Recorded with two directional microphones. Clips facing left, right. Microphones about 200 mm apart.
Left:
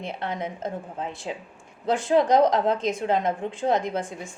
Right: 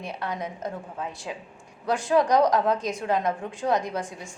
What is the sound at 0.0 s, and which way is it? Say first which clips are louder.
Speech: left 1 dB; 25° left (ahead or behind).